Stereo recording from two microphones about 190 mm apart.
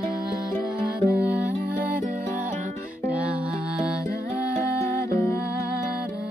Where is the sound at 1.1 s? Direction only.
5° right (ahead or behind).